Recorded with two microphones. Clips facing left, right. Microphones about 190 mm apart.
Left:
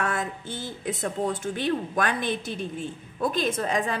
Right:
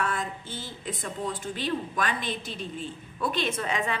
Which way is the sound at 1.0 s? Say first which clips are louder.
Left 5 dB; 45° left (ahead or behind).